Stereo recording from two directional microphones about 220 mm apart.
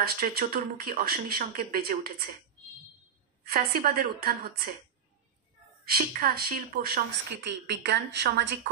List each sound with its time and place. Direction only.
0.0 s speech: 45° right (ahead or behind)
3.4 s a woman's voice: 45° right (ahead or behind)
5.9 s a woman's voice: 40° right (ahead or behind)